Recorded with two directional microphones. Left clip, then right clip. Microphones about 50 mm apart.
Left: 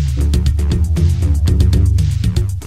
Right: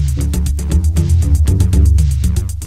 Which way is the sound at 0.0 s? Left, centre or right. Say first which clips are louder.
Left 1 dB; right.